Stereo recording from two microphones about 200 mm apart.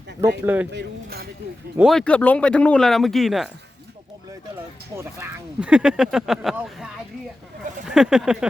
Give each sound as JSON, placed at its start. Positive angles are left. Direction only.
{"t": 0.4, "sound": "speech", "side_deg": -10}
{"t": 0.7, "sound": "speech", "side_deg": -55}
{"t": 1.7, "sound": "speech", "side_deg": 0}
{"t": 4.9, "sound": "speech", "side_deg": -10}